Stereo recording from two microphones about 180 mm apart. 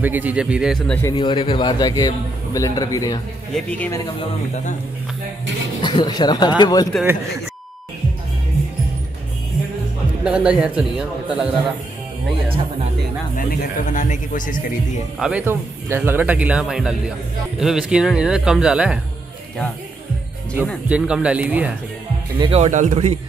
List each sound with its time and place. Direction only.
0.0 s speech: 10° right (ahead or behind); by 1.1 s 5° left (ahead or behind)
1.1 s a man's voice: 25° left (ahead or behind)
3.5 s speech: 10° left (ahead or behind)
5.8 s a man's voice: 25° left (ahead or behind)
10.2 s speech: 5° right (ahead or behind)
13.4 s speech: 50° left (ahead or behind)
15.1 s speech: 5° right (ahead or behind)
20.9 s speech: 5° right (ahead or behind)
22.4 s speech: 35° right (ahead or behind)